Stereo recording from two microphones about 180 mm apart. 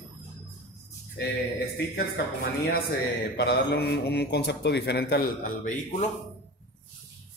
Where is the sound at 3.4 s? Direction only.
65° left (ahead or behind); by 6.0 s 50° left (ahead or behind).